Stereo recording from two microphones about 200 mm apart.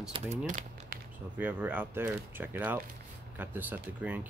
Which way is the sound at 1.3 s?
10° right (ahead or behind).